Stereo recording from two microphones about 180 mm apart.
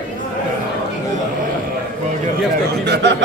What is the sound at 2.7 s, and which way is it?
Speech, 65° right (ahead or behind).